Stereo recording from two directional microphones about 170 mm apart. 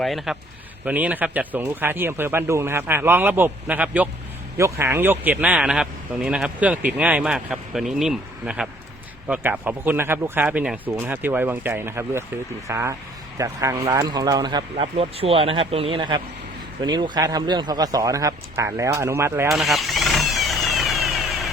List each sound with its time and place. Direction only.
0.0 s speech: centre (ahead or behind); by 19.5 s 15° right (ahead or behind)
19.5 s vehicle: centre (ahead or behind)